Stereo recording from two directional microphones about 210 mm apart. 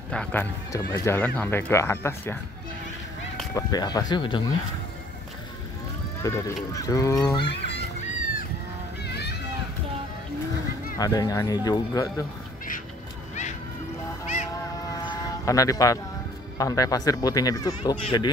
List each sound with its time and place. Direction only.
0.1 s speech: 5° left (ahead or behind)
3.5 s speech: 20° left (ahead or behind)
6.2 s speech: 15° left (ahead or behind)
9.0 s music: 50° left (ahead or behind)
11.0 s speech: 15° left (ahead or behind)
15.4 s speech: 15° left (ahead or behind)